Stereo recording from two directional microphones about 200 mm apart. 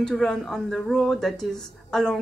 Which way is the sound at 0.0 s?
5° left (ahead or behind).